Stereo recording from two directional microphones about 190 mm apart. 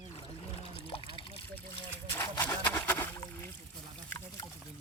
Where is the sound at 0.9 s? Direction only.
30° left (ahead or behind).